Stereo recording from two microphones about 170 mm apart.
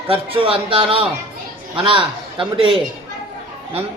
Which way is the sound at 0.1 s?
30° right (ahead or behind).